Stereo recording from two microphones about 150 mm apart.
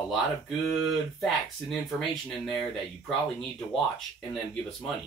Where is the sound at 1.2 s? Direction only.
Centre (ahead or behind).